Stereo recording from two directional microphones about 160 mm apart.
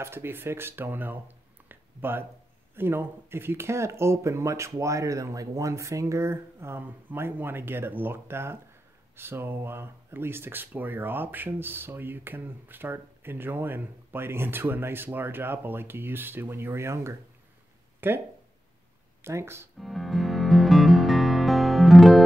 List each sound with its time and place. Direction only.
0.0 s speech: 15° right (ahead or behind)
19.2 s speech: 15° right (ahead or behind)
19.8 s music: centre (ahead or behind)